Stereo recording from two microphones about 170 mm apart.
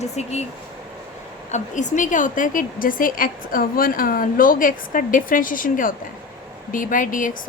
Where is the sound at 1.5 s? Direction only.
45° left (ahead or behind).